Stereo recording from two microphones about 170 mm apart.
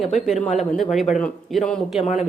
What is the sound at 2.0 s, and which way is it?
Speech, 45° left (ahead or behind).